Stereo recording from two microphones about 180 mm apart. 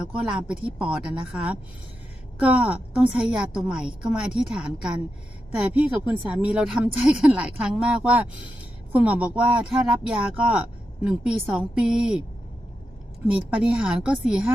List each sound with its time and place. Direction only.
0.3 s a woman's voice: 5° right (ahead or behind)
13.5 s speech: 5° right (ahead or behind)